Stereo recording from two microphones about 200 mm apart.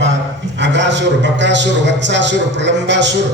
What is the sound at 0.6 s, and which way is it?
A man's voice, 60° right (ahead or behind).